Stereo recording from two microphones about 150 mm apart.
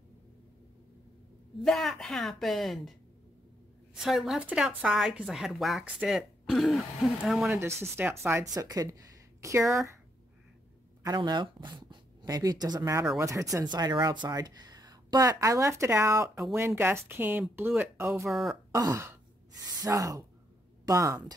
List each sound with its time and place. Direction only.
1.6 s a woman's voice: centre (ahead or behind)
7.5 s speech: 15° right (ahead or behind)
11.0 s speech: 25° right (ahead or behind)
18.3 s a woman's voice: centre (ahead or behind)
18.7 s sigh: 20° right (ahead or behind)
19.6 s speech: 25° right (ahead or behind)